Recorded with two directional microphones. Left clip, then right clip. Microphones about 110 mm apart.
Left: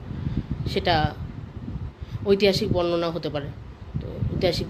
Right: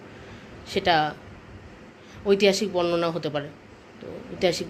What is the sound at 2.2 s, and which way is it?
Speech, 15° left (ahead or behind).